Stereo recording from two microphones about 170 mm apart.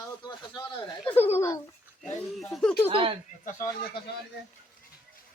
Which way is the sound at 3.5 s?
50° left (ahead or behind).